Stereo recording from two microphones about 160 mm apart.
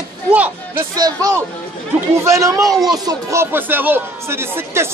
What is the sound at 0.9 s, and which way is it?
Speech, 20° right (ahead or behind).